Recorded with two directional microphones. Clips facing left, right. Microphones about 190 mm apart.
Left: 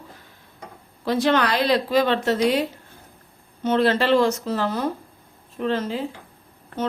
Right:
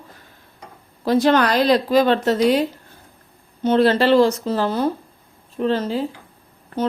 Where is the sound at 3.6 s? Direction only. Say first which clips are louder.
Right 4 dB; 35° right (ahead or behind).